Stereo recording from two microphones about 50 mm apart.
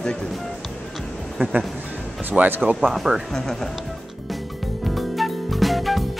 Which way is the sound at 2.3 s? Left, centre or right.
Right.